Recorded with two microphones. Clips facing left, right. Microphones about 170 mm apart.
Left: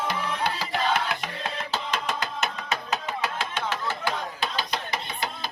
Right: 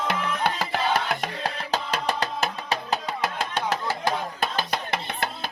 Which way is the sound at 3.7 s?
40° right (ahead or behind).